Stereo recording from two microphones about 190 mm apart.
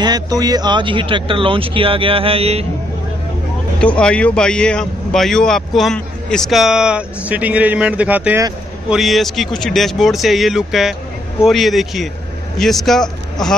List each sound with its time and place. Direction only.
0.0 s speech: 20° right (ahead or behind)
3.8 s a man's voice: 5° left (ahead or behind)